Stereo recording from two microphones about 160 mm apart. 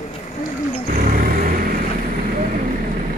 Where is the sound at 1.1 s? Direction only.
65° right (ahead or behind).